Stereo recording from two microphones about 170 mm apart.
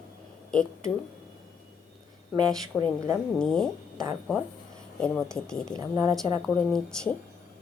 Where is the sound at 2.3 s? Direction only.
Centre (ahead or behind).